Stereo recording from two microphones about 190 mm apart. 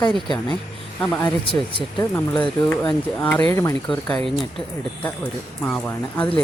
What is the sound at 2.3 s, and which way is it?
Speech, 5° left (ahead or behind).